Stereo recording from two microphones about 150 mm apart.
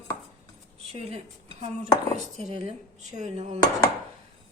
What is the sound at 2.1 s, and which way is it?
Speech, 50° right (ahead or behind).